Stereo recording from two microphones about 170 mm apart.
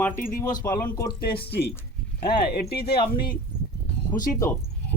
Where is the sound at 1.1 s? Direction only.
65° left (ahead or behind).